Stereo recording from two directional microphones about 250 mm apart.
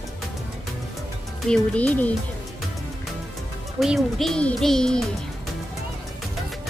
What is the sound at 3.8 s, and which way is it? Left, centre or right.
Speech, centre.